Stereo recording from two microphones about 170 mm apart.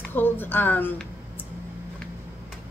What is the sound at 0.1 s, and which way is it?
Speech, 10° left (ahead or behind).